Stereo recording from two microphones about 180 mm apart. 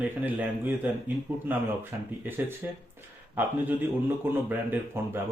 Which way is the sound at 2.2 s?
10° right (ahead or behind).